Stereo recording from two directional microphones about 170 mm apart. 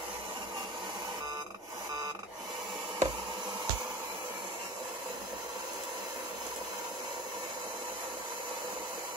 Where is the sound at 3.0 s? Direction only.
25° right (ahead or behind).